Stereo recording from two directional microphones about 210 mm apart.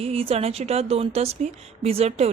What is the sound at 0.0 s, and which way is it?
A woman's voice, 30° right (ahead or behind).